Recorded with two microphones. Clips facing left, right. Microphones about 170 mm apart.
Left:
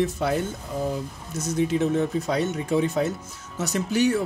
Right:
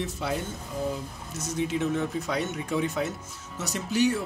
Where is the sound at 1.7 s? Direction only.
35° left (ahead or behind).